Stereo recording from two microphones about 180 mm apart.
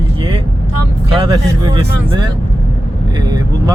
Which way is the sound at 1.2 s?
30° right (ahead or behind).